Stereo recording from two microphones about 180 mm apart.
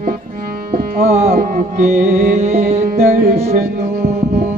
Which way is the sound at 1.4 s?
50° right (ahead or behind).